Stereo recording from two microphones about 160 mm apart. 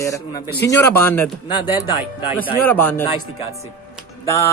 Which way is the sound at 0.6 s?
15° left (ahead or behind).